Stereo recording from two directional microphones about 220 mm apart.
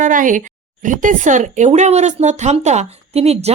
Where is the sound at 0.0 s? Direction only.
35° right (ahead or behind).